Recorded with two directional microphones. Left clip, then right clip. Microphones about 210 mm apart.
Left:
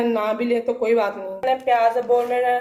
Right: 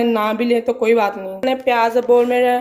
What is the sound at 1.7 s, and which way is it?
Speech, 50° right (ahead or behind).